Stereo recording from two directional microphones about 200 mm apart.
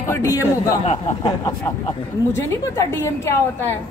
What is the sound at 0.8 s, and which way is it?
Speech, 30° left (ahead or behind).